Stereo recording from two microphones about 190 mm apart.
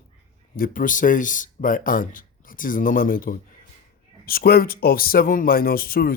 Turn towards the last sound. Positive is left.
turn(degrees=50)  # may be behind; listen again after turning